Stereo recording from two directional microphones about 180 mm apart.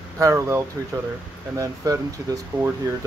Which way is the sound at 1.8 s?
20° right (ahead or behind).